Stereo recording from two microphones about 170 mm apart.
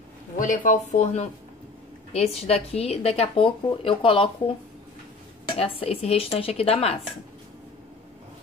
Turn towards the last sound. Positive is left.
turn(degrees=35)  # may be behind; listen again after turning